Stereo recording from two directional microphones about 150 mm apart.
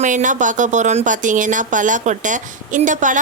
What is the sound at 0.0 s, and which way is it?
Speech, 55° right (ahead or behind).